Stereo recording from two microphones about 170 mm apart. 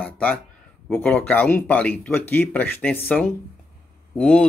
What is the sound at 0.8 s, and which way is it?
Speech, 10° left (ahead or behind).